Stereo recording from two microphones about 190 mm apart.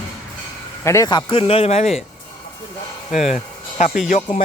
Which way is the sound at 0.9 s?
20° left (ahead or behind).